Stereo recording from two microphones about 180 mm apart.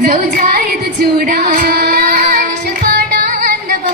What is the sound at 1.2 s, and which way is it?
Female singing, 55° right (ahead or behind).